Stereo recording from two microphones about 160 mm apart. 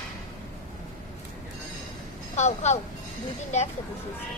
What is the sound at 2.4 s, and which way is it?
Speech, 45° left (ahead or behind).